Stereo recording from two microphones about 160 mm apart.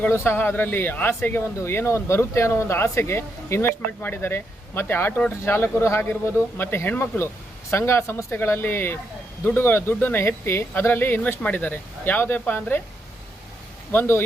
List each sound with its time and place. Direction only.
0.0 s speech: 15° left (ahead or behind)
13.9 s speech: 15° left (ahead or behind)